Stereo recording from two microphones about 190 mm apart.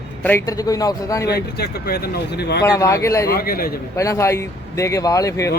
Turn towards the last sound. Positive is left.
turn(degrees=15)  # may be behind; listen again after turning